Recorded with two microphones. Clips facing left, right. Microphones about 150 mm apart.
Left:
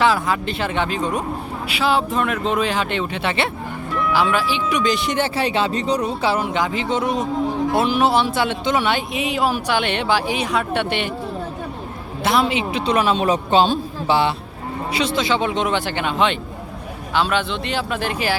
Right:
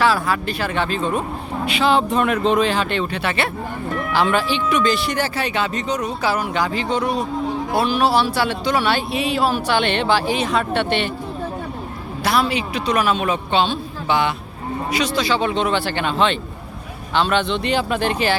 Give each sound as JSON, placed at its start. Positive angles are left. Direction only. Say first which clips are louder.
{"t": 0.0, "sound": "speech", "louder": "even", "side_deg": 20}
{"t": 4.1, "sound": "speech", "louder": "right 1 dB", "side_deg": 5}
{"t": 12.2, "sound": "speech", "louder": "left 1 dB", "side_deg": 20}